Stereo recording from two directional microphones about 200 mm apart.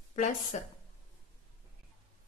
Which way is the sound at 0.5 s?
35° left (ahead or behind).